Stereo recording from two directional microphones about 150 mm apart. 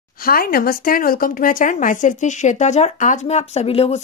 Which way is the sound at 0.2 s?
75° left (ahead or behind).